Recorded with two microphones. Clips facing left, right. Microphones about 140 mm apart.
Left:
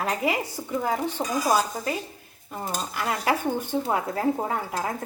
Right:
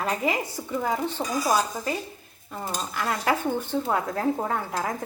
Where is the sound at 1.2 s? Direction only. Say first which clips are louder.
Left 1 dB; 20° left (ahead or behind).